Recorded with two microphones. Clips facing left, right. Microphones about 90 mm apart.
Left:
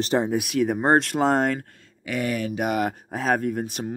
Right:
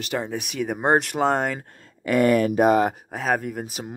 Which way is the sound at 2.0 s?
50° right (ahead or behind).